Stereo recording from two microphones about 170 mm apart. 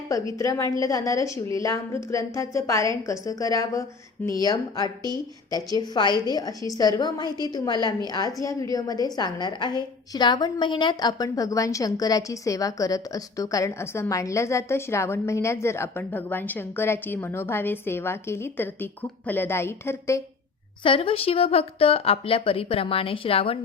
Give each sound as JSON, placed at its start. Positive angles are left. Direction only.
{"t": 0.3, "sound": "a woman's voice", "side_deg": 20}
{"t": 5.9, "sound": "a woman's voice", "side_deg": 25}
{"t": 20.8, "sound": "speech", "side_deg": 35}